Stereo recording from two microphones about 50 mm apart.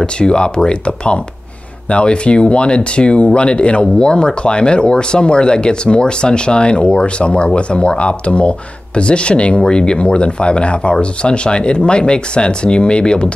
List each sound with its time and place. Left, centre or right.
0.0 s speech: centre